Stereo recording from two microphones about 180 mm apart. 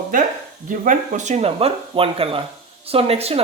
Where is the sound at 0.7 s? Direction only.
45° right (ahead or behind).